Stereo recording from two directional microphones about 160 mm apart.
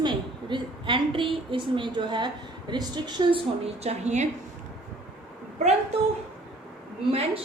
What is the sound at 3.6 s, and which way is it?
Speech, 45° right (ahead or behind).